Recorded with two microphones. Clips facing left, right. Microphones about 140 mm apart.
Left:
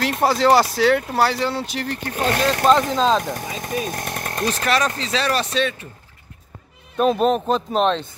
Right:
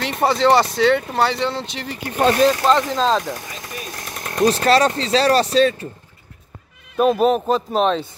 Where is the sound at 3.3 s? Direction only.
50° left (ahead or behind).